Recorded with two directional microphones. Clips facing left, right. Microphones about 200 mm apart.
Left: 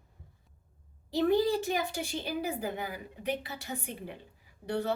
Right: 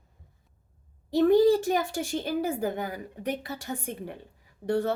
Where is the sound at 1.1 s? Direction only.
50° right (ahead or behind).